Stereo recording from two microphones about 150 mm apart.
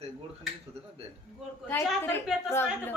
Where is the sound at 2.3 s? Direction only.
5° right (ahead or behind).